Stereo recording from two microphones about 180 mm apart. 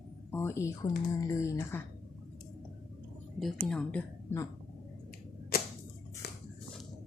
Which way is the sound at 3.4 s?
Centre (ahead or behind).